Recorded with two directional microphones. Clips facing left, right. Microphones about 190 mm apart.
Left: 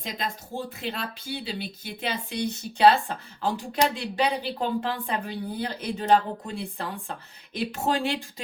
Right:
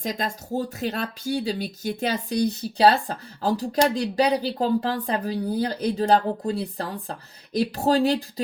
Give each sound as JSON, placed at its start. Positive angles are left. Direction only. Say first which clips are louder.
{"t": 0.0, "sound": "speech", "louder": "right 5 dB", "side_deg": -45}